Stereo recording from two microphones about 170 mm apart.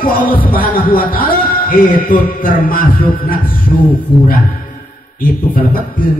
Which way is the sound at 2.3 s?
60° left (ahead or behind).